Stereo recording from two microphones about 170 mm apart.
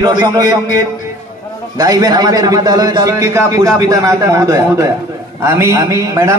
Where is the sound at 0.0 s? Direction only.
25° right (ahead or behind).